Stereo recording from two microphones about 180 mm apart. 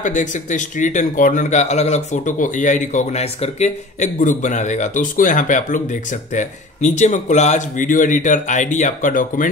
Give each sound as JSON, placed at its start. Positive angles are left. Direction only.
{"t": 0.0, "sound": "a man's voice", "side_deg": 45}